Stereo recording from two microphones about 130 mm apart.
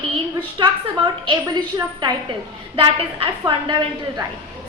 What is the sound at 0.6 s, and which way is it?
Speech, 35° right (ahead or behind).